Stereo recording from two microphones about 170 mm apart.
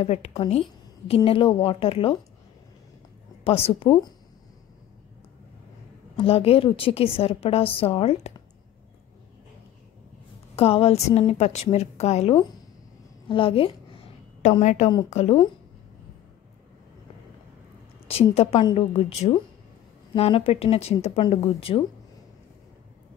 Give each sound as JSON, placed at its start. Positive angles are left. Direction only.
{"t": 0.0, "sound": "a woman's voice", "side_deg": 35}
{"t": 3.4, "sound": "a woman's voice", "side_deg": 35}
{"t": 6.1, "sound": "a woman's voice", "side_deg": 35}
{"t": 10.5, "sound": "a woman's voice", "side_deg": 35}
{"t": 13.3, "sound": "a sound", "side_deg": 30}
{"t": 15.0, "sound": "a woman's voice", "side_deg": 40}
{"t": 18.0, "sound": "a woman's voice", "side_deg": 35}